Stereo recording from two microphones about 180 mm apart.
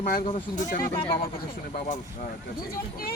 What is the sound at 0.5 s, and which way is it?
Speech, 50° left (ahead or behind).